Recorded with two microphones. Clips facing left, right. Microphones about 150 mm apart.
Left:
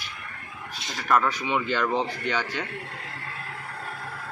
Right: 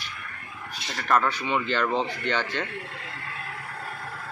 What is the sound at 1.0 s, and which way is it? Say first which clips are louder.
Speech: even; 10° left (ahead or behind).